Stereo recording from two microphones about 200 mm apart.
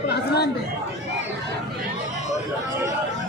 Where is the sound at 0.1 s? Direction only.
55° left (ahead or behind).